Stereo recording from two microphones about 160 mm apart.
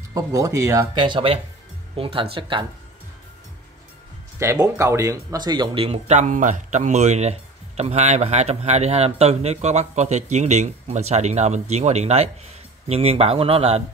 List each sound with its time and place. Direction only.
0.1 s speech: 20° right (ahead or behind)
0.9 s speech: 30° right (ahead or behind)
4.4 s speech: 20° right (ahead or behind); by 13.8 s 40° right (ahead or behind)